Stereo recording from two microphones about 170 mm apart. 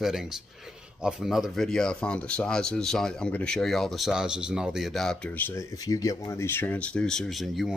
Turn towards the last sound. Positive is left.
turn(degrees=0)  # may be behind; listen again after turning